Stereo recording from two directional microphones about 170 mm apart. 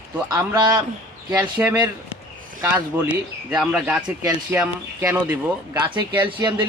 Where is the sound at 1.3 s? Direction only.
10° right (ahead or behind).